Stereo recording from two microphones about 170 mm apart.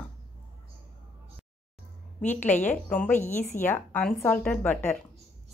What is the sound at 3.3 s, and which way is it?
Speech, 45° left (ahead or behind).